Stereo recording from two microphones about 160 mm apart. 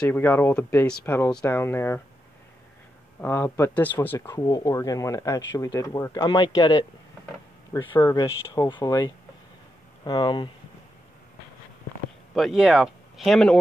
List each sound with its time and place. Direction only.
0.1 s speech: 10° left (ahead or behind)
3.2 s speech: 15° left (ahead or behind)
10.0 s speech: 30° left (ahead or behind)
12.4 s speech: centre (ahead or behind)